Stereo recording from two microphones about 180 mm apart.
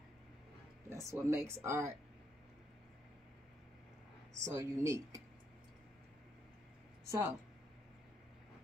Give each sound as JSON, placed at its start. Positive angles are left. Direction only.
{"t": 0.8, "sound": "speech", "side_deg": -15}
{"t": 4.4, "sound": "speech", "side_deg": -15}
{"t": 7.1, "sound": "speech", "side_deg": -15}